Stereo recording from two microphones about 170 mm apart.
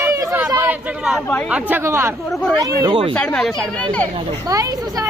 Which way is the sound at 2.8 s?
30° right (ahead or behind).